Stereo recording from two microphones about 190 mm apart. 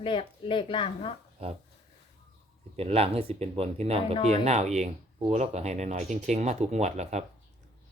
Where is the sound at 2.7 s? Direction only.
30° right (ahead or behind).